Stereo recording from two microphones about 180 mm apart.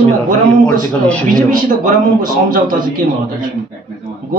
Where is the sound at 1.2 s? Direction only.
50° right (ahead or behind).